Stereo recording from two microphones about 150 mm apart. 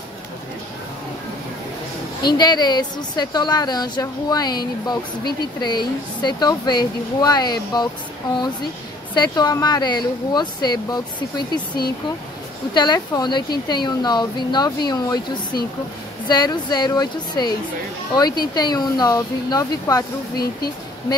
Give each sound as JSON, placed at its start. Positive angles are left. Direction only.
{"t": 2.2, "sound": "a woman's voice", "side_deg": 30}
{"t": 9.1, "sound": "a woman's voice", "side_deg": 30}